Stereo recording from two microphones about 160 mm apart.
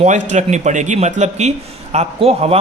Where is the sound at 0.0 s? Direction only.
45° right (ahead or behind).